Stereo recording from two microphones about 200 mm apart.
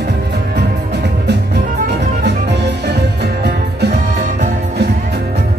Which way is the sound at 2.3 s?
60° right (ahead or behind).